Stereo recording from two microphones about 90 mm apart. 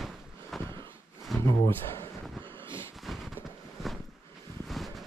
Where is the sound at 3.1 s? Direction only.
Centre (ahead or behind).